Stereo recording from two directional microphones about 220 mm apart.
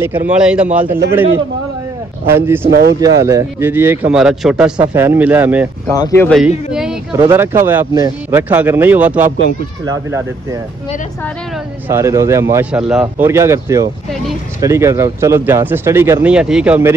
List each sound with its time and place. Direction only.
0.0 s a man's voice: 10° right (ahead or behind)
2.2 s speech: 10° right (ahead or behind)
2.7 s speech: 45° right (ahead or behind)
3.2 s speech: 15° right (ahead or behind)
5.9 s speech: 15° left (ahead or behind)
6.2 s speech: centre (ahead or behind)
7.2 s speech: 15° right (ahead or behind)
11.9 s speech: 15° right (ahead or behind)